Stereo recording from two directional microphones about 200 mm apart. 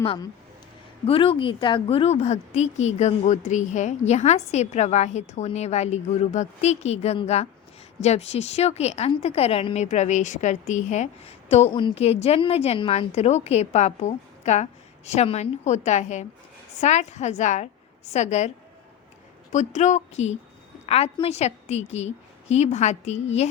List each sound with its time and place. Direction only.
0.0 s a woman's voice: 25° left (ahead or behind)